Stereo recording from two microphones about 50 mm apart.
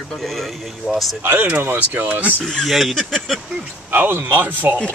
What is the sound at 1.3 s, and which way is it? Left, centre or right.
Speech, right.